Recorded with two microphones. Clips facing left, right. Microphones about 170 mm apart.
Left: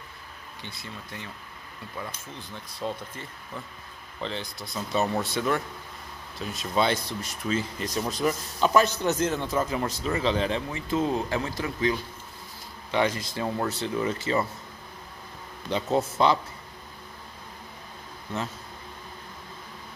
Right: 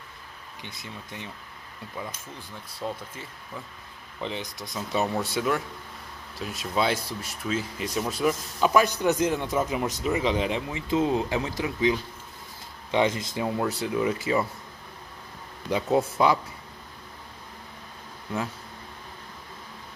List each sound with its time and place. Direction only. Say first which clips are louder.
0.6 s speech: even; 15° right (ahead or behind)
2.8 s speech: left 1 dB; 5° right (ahead or behind)
15.7 s speech: right 2 dB; 10° right (ahead or behind)